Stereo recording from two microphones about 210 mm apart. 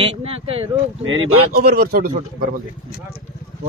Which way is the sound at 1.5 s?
45° right (ahead or behind).